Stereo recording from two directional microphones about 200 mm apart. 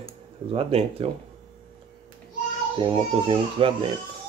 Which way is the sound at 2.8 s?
25° right (ahead or behind).